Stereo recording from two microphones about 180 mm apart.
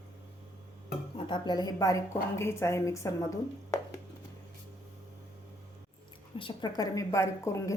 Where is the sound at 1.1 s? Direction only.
25° left (ahead or behind).